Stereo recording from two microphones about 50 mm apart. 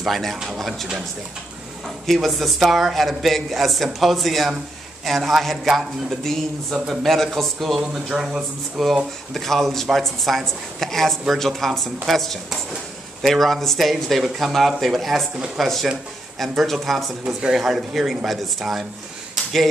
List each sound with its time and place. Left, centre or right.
0.0 s speech: centre
2.2 s speech: centre
8.2 s speech: right
8.8 s speech: centre
15.3 s speech: centre
15.6 s speech: centre